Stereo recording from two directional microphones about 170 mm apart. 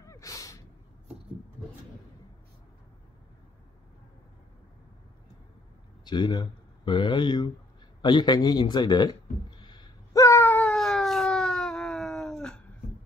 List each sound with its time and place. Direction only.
0.0 s gasp: 20° left (ahead or behind)
6.0 s a man's voice: 25° left (ahead or behind)
9.6 s wail: 25° left (ahead or behind); by 12.5 s 5° left (ahead or behind)